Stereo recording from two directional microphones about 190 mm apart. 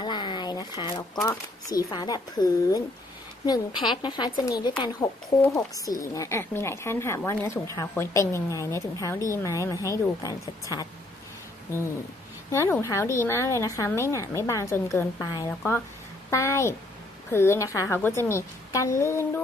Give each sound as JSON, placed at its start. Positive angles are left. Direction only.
{"t": 0.0, "sound": "a sound", "side_deg": 25}
{"t": 1.7, "sound": "a woman's voice", "side_deg": 20}
{"t": 12.4, "sound": "a woman's voice", "side_deg": 10}